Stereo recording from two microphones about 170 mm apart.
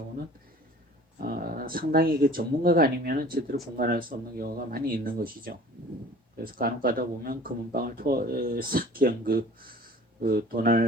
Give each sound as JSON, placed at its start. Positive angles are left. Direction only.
{"t": 1.2, "sound": "speech", "side_deg": -60}